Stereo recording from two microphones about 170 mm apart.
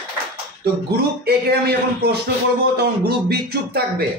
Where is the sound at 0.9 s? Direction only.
70° right (ahead or behind).